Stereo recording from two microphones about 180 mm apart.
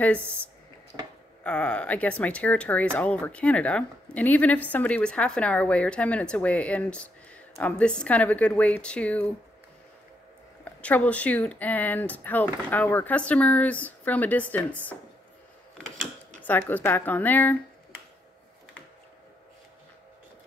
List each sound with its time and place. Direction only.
0.0 s speech: 5° left (ahead or behind)
0.9 s a sound: 20° right (ahead or behind)
1.4 s speech: 5° left (ahead or behind)
10.6 s speech: 5° left (ahead or behind)